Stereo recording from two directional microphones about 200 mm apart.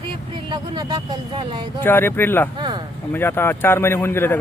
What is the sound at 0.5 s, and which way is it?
Speech, 20° right (ahead or behind).